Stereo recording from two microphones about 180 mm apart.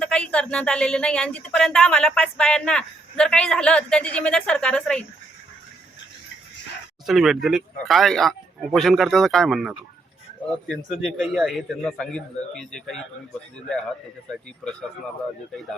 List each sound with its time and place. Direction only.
0.0 s speech: 5° left (ahead or behind)
7.1 s speech: centre (ahead or behind)